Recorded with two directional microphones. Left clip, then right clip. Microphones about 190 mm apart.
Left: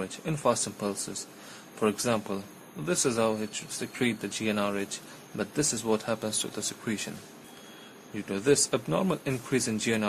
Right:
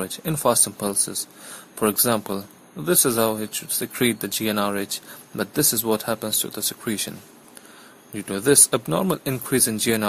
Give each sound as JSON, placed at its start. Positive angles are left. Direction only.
{"t": 0.0, "sound": "speech", "side_deg": -25}